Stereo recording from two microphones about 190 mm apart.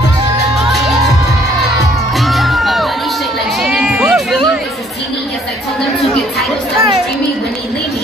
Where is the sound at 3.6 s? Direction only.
Centre (ahead or behind).